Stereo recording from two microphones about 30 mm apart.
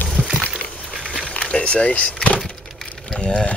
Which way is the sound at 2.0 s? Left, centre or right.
Left.